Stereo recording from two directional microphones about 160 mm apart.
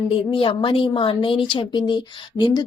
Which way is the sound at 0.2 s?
35° left (ahead or behind).